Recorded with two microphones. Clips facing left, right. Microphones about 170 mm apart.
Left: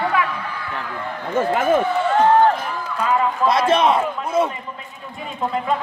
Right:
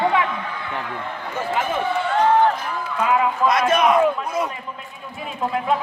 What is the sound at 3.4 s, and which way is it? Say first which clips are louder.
A man's voice: left 2 dB; 30° left (ahead or behind).